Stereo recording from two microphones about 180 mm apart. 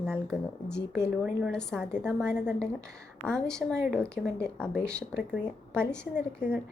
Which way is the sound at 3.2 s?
5° left (ahead or behind).